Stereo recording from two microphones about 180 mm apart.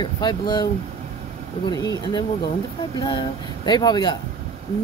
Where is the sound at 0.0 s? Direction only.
25° left (ahead or behind).